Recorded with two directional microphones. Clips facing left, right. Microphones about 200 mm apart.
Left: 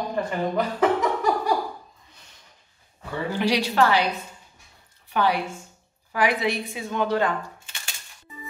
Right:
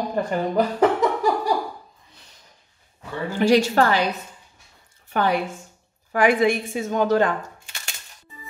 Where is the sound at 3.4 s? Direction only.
45° right (ahead or behind).